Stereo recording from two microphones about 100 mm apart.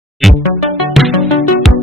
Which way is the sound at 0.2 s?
Centre (ahead or behind).